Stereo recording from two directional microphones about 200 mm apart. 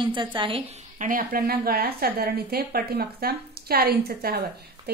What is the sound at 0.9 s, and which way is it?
A woman's voice, 45° right (ahead or behind).